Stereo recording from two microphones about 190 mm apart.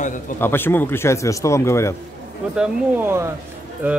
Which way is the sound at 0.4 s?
10° left (ahead or behind).